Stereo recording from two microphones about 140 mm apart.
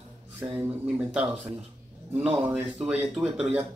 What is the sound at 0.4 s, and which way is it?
Speech, 15° right (ahead or behind).